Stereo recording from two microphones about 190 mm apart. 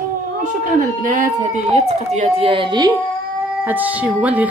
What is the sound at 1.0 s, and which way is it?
Speech, 40° right (ahead or behind).